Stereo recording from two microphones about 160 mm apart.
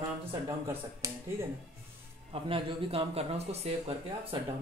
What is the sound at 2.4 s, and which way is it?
Speech, 35° right (ahead or behind).